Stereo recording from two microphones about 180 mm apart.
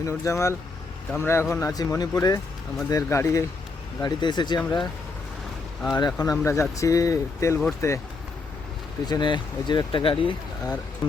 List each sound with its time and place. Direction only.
0.0 s speech: 15° left (ahead or behind)
5.9 s speech: 20° left (ahead or behind)
9.0 s speech: 25° left (ahead or behind)